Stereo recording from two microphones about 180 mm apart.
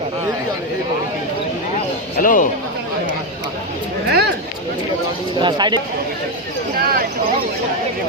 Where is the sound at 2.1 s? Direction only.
50° left (ahead or behind).